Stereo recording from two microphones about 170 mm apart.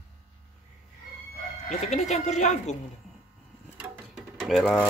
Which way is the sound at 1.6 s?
40° left (ahead or behind).